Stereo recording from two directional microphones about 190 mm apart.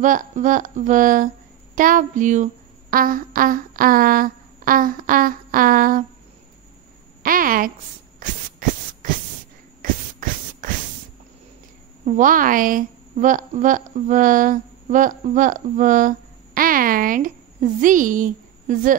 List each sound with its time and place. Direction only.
0.0 s speech: 45° right (ahead or behind)
7.2 s speech: 45° right (ahead or behind)
8.2 s a sound: 45° right (ahead or behind)
10.6 s spray: 45° right (ahead or behind)
12.0 s a woman's voice: 40° right (ahead or behind)